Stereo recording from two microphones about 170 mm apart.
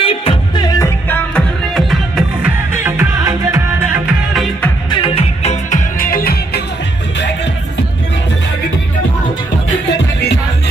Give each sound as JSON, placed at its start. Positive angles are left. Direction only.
{"t": 0.0, "sound": "music", "side_deg": 35}
{"t": 2.7, "sound": "music", "side_deg": -15}
{"t": 4.3, "sound": "music", "side_deg": 0}
{"t": 4.9, "sound": "music", "side_deg": 35}
{"t": 5.9, "sound": "music", "side_deg": 60}
{"t": 9.8, "sound": "music", "side_deg": 85}